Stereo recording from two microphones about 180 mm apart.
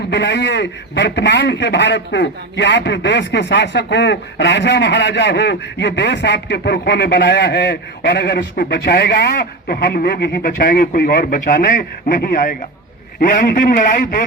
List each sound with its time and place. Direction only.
0.1 s a man's voice: 70° left (ahead or behind); by 14.3 s 50° left (ahead or behind)